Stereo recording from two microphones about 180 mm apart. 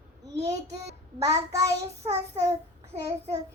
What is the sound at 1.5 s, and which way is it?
Child singing, 20° right (ahead or behind).